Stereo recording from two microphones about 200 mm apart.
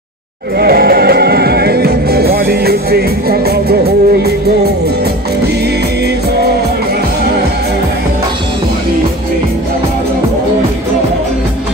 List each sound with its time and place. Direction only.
0.6 s music: 50° right (ahead or behind)